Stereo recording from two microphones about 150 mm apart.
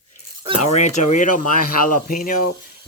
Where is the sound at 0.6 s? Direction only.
50° left (ahead or behind); by 2.4 s 65° left (ahead or behind).